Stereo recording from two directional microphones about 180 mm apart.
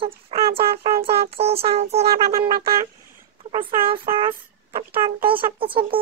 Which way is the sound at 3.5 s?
30° right (ahead or behind).